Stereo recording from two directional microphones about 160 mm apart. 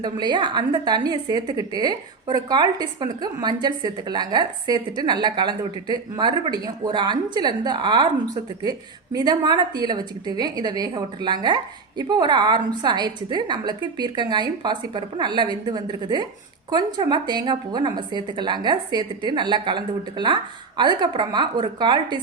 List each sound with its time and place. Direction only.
0.0 s a woman's voice: 25° right (ahead or behind)
9.1 s a woman's voice: 25° right (ahead or behind)